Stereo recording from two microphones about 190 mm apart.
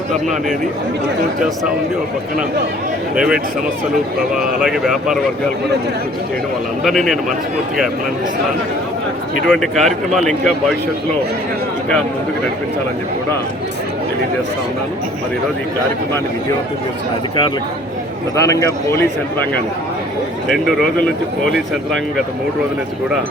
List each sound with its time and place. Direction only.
3.2 s speech: 5° right (ahead or behind)
6.8 s speech: centre (ahead or behind)
9.5 s speech: centre (ahead or behind)
18.3 s a man's voice: 15° left (ahead or behind)
20.5 s speech: centre (ahead or behind)